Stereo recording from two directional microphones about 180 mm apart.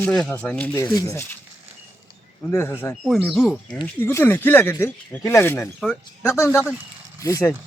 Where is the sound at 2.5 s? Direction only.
15° left (ahead or behind).